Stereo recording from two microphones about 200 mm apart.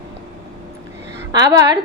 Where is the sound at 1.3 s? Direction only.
15° right (ahead or behind).